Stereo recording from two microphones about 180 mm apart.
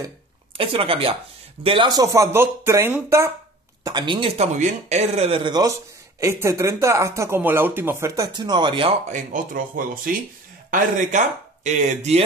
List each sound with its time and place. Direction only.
0.6 s speech: 30° right (ahead or behind); by 3.3 s 15° right (ahead or behind)
3.8 s speech: 25° right (ahead or behind)
9.1 s speech: 45° right (ahead or behind)